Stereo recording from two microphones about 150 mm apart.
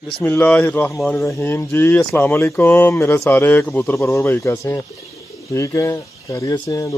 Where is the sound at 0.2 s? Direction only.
10° left (ahead or behind).